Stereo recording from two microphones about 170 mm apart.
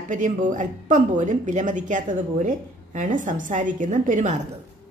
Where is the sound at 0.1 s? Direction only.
50° right (ahead or behind).